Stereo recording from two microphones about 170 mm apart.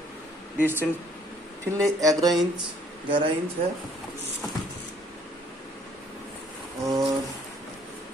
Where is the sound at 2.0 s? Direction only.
20° right (ahead or behind).